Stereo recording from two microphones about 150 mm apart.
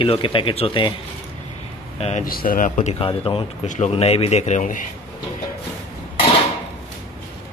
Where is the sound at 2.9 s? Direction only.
40° left (ahead or behind).